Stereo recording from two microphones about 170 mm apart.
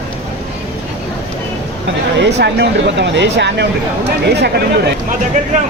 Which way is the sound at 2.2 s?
85° right.